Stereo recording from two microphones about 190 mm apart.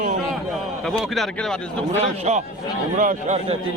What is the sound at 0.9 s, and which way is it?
Speech, centre (ahead or behind).